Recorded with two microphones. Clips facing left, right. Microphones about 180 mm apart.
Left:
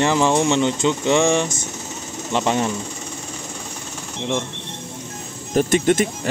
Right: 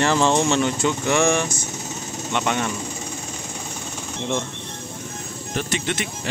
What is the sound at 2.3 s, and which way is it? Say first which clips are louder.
Speech: left 4 dB; 30° left (ahead or behind).